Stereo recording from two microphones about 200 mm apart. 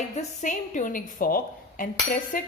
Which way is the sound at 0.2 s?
40° left (ahead or behind).